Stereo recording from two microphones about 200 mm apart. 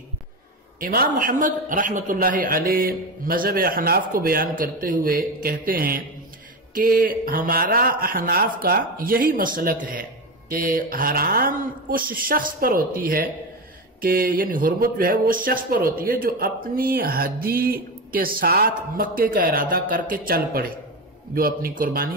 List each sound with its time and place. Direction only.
0.7 s a man's voice: 45° right (ahead or behind)